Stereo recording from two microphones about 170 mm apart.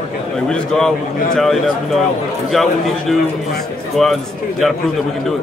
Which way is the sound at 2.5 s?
Centre (ahead or behind).